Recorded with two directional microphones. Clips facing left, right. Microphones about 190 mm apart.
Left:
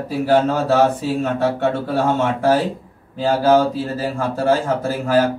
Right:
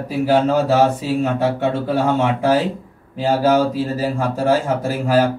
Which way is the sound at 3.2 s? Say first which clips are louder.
Left 1 dB; 10° right (ahead or behind).